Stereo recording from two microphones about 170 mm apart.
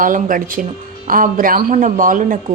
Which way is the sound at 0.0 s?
50° right (ahead or behind).